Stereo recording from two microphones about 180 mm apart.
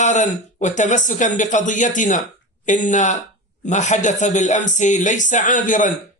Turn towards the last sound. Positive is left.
turn(degrees=45)  # may be behind; listen again after turning